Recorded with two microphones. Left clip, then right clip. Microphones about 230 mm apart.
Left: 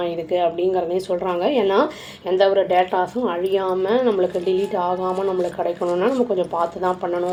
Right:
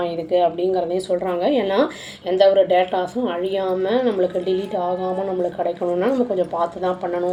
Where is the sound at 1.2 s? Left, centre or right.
Left.